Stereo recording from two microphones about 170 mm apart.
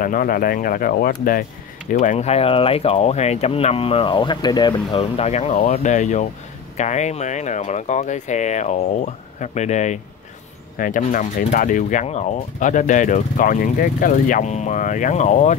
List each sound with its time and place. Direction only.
0.0 s speech: 55° left (ahead or behind)